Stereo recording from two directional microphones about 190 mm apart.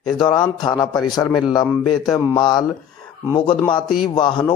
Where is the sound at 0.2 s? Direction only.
20° left (ahead or behind).